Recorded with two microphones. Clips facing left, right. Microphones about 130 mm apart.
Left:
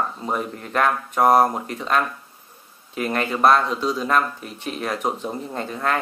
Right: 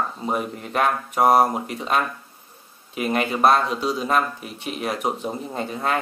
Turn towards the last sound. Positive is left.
turn(degrees=-15)  # may be behind; listen again after turning